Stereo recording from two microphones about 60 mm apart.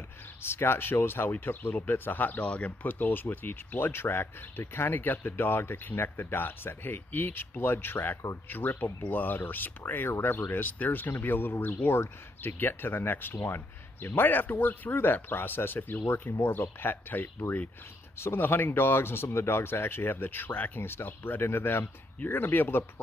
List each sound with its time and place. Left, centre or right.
0.4 s speech: left